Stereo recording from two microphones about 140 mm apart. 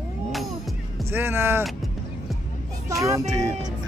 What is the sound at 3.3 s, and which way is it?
Speech, 25° right (ahead or behind).